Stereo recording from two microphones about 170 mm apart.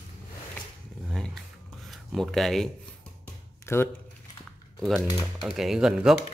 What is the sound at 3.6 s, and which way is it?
Speech, 15° left (ahead or behind).